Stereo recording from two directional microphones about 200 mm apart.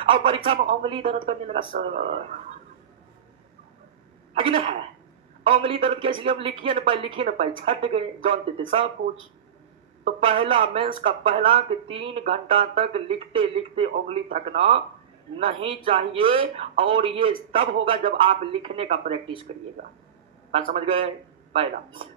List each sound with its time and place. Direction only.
0.0 s speech: 25° right (ahead or behind)
4.3 s speech: 30° right (ahead or behind)
10.0 s speech: 25° right (ahead or behind)
20.7 s speech: 30° right (ahead or behind)